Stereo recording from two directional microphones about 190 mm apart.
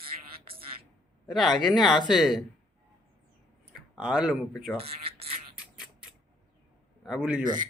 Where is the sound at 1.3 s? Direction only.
Centre (ahead or behind).